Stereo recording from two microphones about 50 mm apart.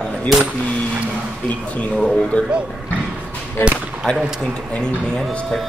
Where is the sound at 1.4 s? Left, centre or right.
Left.